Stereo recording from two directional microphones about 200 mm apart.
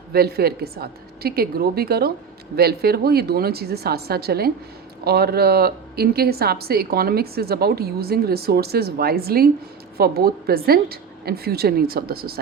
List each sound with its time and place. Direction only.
0.1 s a woman's voice: 50° right (ahead or behind)